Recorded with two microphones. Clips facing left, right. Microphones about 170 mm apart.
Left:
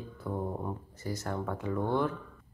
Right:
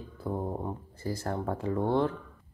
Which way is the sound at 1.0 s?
30° right (ahead or behind).